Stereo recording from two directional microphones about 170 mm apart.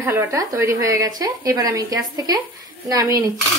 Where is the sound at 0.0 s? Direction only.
15° right (ahead or behind).